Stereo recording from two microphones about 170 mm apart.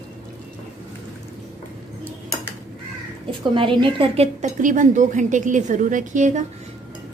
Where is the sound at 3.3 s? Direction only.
30° right (ahead or behind); by 6.4 s 45° right (ahead or behind).